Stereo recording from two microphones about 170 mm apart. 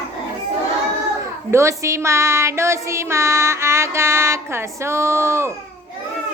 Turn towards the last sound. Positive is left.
turn(degrees=-15)  # may be behind; listen again after turning